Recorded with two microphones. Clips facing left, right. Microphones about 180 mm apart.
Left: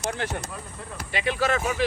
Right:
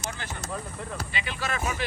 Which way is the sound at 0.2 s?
65° left (ahead or behind).